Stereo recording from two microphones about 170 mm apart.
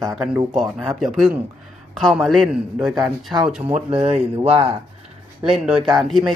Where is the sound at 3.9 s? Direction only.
35° right (ahead or behind).